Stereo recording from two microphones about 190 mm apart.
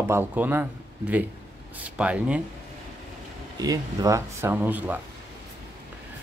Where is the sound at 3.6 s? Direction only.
20° right (ahead or behind).